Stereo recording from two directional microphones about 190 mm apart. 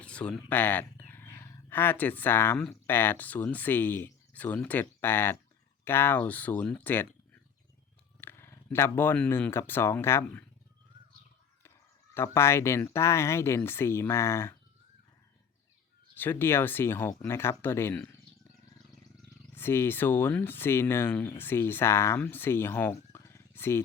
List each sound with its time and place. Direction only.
0.0 s speech: 5° left (ahead or behind)
8.2 s speech: 10° left (ahead or behind)
12.1 s speech: 15° left (ahead or behind)
16.1 s speech: 10° left (ahead or behind)
19.5 s speech: 10° left (ahead or behind)